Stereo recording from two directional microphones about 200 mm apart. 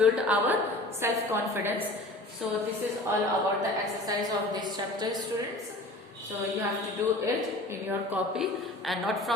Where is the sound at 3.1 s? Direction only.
10° right (ahead or behind).